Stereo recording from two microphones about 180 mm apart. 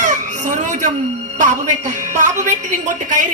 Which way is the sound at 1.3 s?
45° right (ahead or behind).